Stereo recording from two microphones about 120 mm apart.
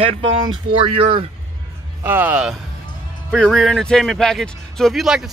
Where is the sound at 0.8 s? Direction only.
50° right (ahead or behind).